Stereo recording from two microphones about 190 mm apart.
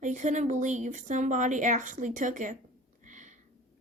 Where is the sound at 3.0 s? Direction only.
40° right (ahead or behind).